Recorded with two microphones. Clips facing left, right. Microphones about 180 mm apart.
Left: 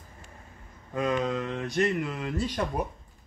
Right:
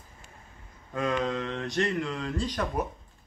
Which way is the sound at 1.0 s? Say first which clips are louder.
Left 1 dB; 20° left (ahead or behind).